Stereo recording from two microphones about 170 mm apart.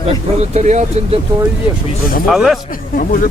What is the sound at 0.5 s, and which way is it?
Speech, 45° right (ahead or behind).